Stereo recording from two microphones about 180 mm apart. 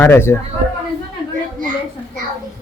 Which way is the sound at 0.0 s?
15° left (ahead or behind).